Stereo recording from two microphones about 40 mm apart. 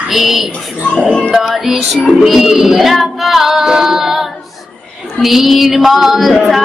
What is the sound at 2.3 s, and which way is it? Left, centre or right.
Female singing, centre.